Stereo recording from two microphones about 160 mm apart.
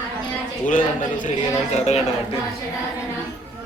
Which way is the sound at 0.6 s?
55° left (ahead or behind).